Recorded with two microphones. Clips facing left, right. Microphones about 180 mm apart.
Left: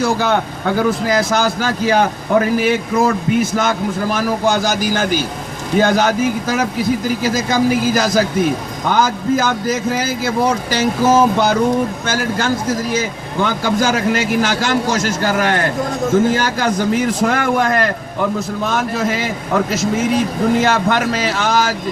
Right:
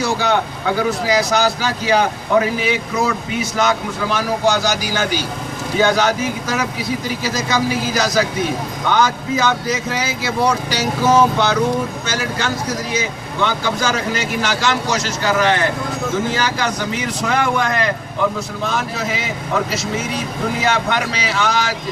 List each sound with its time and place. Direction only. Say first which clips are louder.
0.0 s speech: left 2 dB; 50° left (ahead or behind)